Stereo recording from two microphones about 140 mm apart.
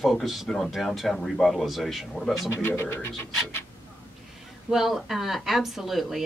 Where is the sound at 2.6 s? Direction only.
15° left (ahead or behind).